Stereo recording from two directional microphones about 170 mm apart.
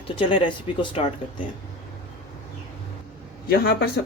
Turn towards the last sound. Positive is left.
turn(degrees=65)  # may be behind; listen again after turning